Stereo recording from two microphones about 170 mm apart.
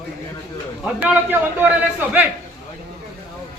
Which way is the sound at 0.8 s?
10° right (ahead or behind).